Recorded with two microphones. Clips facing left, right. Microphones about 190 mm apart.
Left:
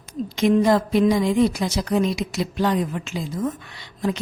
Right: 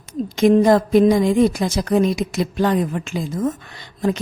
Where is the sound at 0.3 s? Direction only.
45° right (ahead or behind).